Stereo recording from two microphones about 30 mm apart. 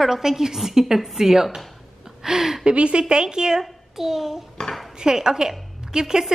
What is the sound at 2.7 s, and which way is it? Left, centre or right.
Speech, right.